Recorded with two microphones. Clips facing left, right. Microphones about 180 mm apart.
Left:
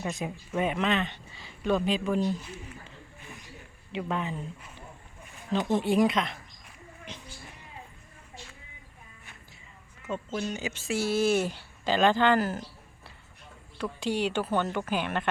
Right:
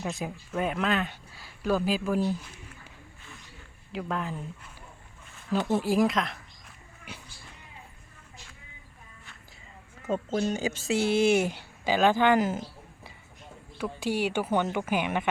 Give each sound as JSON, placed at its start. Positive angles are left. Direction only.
{"t": 0.0, "sound": "speech", "side_deg": 0}
{"t": 3.9, "sound": "speech", "side_deg": 0}
{"t": 5.5, "sound": "speech", "side_deg": -5}
{"t": 10.0, "sound": "speech", "side_deg": -45}
{"t": 10.9, "sound": "speech", "side_deg": -15}
{"t": 13.7, "sound": "speech", "side_deg": -5}